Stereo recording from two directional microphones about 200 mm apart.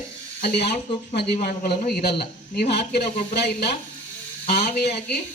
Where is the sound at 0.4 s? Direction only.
55° left (ahead or behind).